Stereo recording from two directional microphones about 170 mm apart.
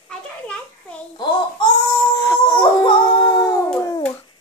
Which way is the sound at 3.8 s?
20° left (ahead or behind).